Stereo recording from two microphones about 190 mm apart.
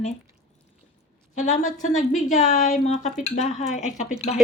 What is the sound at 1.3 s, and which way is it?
A woman's voice, 40° left (ahead or behind).